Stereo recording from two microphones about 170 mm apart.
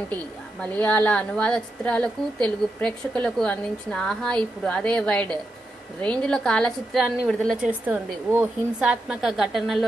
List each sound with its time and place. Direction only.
0.1 s a woman's voice: 5° left (ahead or behind)
7.8 s speech: 10° right (ahead or behind)